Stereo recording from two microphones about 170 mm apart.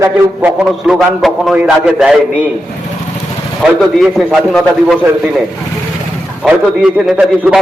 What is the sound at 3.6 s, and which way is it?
A man's voice, centre (ahead or behind).